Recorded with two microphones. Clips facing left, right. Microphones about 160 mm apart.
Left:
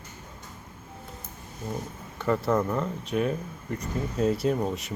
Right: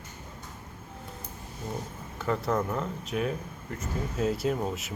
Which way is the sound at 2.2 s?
Centre (ahead or behind).